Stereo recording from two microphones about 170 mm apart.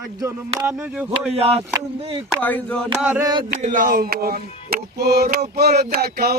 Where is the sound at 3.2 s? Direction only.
25° right (ahead or behind).